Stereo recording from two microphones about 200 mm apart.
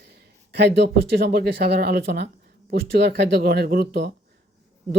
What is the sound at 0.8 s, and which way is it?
Speech, 55° right (ahead or behind).